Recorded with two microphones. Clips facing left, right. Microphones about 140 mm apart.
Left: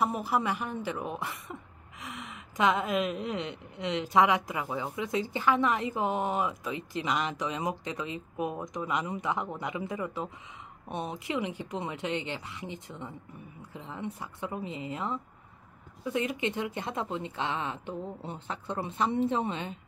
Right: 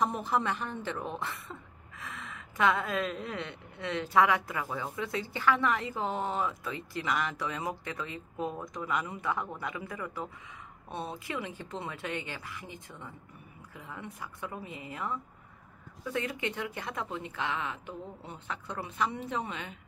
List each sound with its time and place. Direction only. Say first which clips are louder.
0.0 s speech: left 1 dB; 10° left (ahead or behind); by 19.8 s 25° left (ahead or behind)